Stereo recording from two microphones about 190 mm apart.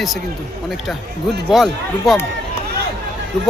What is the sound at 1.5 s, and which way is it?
Speech, centre (ahead or behind).